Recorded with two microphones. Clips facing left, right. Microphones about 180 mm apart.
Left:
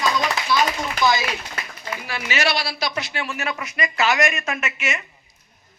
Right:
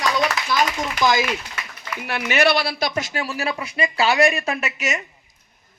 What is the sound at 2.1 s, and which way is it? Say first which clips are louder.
Speech: right 5 dB; 60° right (ahead or behind).